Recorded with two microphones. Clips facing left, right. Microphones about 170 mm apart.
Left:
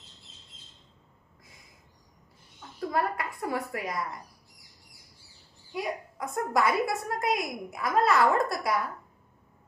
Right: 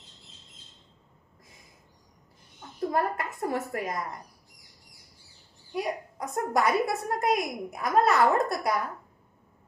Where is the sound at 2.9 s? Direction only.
45° right (ahead or behind).